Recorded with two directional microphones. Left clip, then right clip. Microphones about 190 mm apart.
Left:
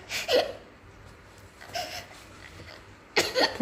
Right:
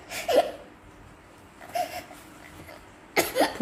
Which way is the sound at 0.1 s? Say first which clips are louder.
Right 2 dB; 5° right (ahead or behind).